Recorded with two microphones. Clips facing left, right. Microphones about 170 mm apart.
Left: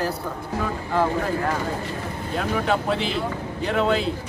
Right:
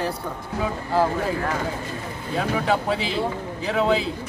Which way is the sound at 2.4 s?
Centre (ahead or behind).